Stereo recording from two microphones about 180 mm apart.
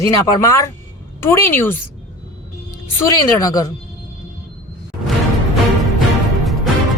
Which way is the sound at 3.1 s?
20° left (ahead or behind).